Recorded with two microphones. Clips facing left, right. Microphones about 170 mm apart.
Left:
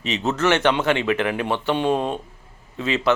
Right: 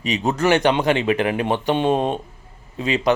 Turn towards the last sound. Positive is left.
turn(degrees=-15)  # may be behind; listen again after turning